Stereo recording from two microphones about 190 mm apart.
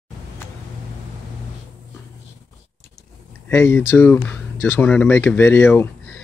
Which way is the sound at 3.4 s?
10° left (ahead or behind).